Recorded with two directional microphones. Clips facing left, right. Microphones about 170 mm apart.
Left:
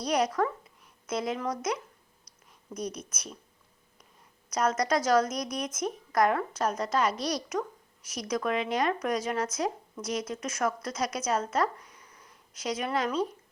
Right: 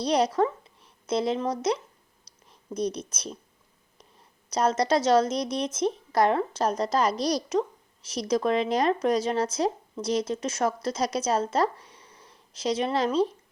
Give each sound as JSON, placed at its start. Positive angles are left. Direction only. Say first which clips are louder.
{"t": 0.0, "sound": "speech", "louder": "right 4 dB", "side_deg": -30}
{"t": 2.2, "sound": "a sound", "louder": "right 5 dB", "side_deg": -30}
{"t": 4.4, "sound": "a woman's voice", "louder": "right 3 dB", "side_deg": -30}